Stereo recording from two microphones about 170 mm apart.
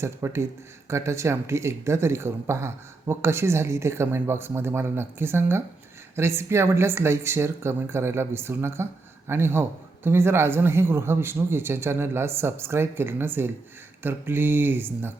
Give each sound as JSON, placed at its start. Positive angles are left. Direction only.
{"t": 0.0, "sound": "speech", "side_deg": -15}